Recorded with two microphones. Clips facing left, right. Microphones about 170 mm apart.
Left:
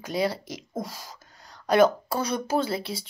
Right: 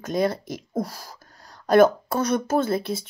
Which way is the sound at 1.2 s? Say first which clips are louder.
Right 1 dB; 50° right (ahead or behind).